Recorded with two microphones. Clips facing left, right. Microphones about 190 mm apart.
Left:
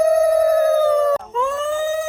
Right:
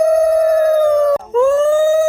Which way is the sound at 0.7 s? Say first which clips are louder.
Right 4 dB; 15° right (ahead or behind).